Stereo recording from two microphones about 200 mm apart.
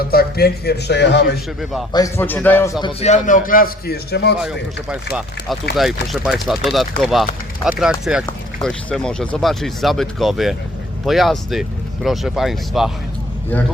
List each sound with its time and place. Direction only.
0.1 s a man's voice: 50° left (ahead or behind)
1.9 s a man's voice: 15° left (ahead or behind)
2.8 s a man's voice: 35° left (ahead or behind); by 4.4 s 55° left (ahead or behind)
4.4 s speech: 5° right (ahead or behind)